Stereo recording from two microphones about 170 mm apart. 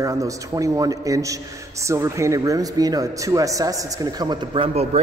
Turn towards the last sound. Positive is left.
turn(degrees=-35)  # may be behind; listen again after turning